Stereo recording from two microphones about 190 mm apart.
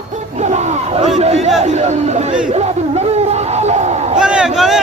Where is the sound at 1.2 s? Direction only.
35° right (ahead or behind).